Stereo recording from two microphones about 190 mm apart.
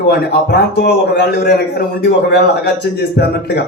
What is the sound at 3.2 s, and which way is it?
Speech, 55° left (ahead or behind).